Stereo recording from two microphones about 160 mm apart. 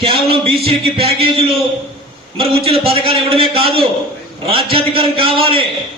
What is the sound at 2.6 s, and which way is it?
A man's voice, 35° right (ahead or behind).